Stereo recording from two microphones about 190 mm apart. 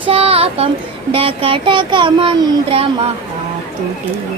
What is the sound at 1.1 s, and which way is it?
A child's voice, 30° right (ahead or behind).